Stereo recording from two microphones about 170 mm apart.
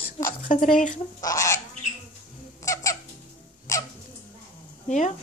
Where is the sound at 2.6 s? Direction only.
20° left (ahead or behind).